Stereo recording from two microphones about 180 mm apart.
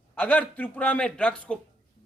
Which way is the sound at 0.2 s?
10° left (ahead or behind).